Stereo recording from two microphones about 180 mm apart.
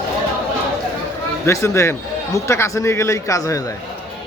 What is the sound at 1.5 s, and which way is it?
A man's voice, 15° left (ahead or behind).